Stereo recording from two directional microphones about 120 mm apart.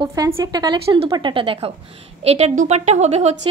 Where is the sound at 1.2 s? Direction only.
50° right (ahead or behind).